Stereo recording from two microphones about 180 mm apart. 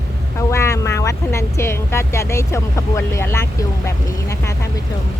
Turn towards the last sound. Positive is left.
turn(degrees=15)  # may be behind; listen again after turning